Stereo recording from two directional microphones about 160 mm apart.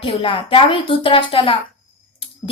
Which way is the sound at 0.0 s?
35° left (ahead or behind).